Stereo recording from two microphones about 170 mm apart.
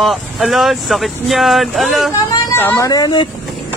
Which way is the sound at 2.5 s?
15° left (ahead or behind).